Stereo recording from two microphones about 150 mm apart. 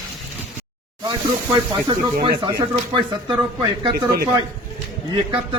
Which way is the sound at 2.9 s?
30° right (ahead or behind).